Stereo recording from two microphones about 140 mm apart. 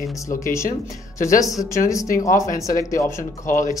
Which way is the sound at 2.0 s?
75° left (ahead or behind).